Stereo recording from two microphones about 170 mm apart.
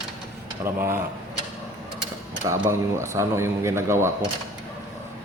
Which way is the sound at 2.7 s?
15° right (ahead or behind).